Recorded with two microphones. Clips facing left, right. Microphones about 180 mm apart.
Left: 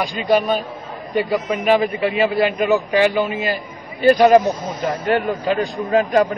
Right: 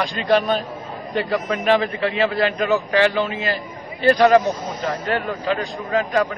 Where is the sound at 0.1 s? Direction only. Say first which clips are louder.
Left 2 dB; 5° left (ahead or behind).